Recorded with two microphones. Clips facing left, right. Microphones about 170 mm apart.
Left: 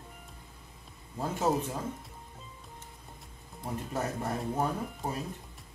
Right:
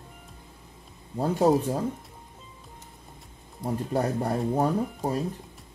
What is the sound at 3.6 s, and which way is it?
Speech, 35° right (ahead or behind).